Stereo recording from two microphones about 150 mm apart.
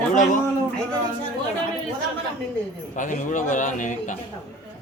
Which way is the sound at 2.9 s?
55° left (ahead or behind).